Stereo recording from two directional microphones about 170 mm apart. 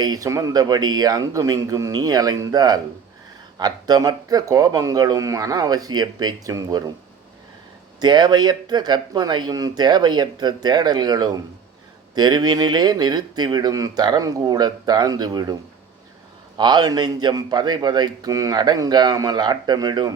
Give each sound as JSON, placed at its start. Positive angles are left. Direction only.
{"t": 0.0, "sound": "speech", "side_deg": -20}
{"t": 7.9, "sound": "speech", "side_deg": -25}
{"t": 16.6, "sound": "speech", "side_deg": -25}